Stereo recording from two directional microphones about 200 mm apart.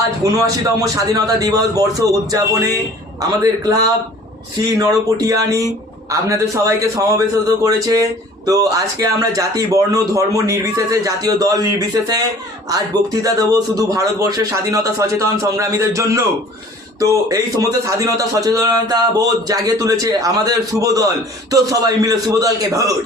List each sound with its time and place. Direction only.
0.2 s a man's voice: 15° right (ahead or behind)
13.2 s a man's voice: 15° right (ahead or behind)